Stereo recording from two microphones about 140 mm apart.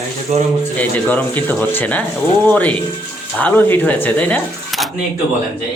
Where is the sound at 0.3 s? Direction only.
55° right (ahead or behind).